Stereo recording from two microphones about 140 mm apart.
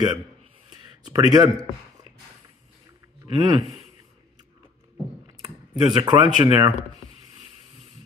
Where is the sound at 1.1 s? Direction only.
25° right (ahead or behind).